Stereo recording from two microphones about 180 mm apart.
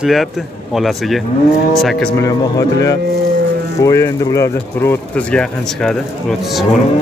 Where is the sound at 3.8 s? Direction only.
20° left (ahead or behind).